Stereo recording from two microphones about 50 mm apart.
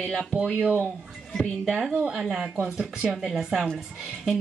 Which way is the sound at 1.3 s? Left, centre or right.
Centre.